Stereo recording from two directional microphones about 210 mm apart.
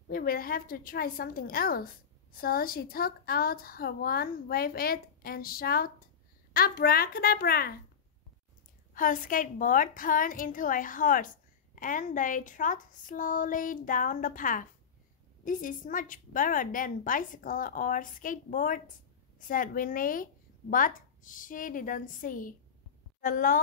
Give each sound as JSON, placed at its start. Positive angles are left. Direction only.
{"t": 0.1, "sound": "a woman's voice", "side_deg": 45}
{"t": 8.9, "sound": "a woman's voice", "side_deg": 40}